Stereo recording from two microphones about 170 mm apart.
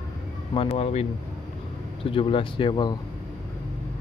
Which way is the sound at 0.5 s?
35° left (ahead or behind).